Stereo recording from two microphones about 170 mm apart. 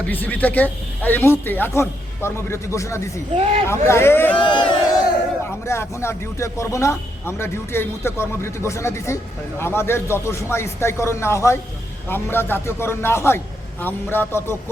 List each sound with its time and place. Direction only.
0.1 s a man's voice: 10° left (ahead or behind)
3.3 s speech: 40° right (ahead or behind)
3.7 s a man's voice: 15° left (ahead or behind)
4.4 s speech: 30° left (ahead or behind)
5.5 s a man's voice: 15° left (ahead or behind)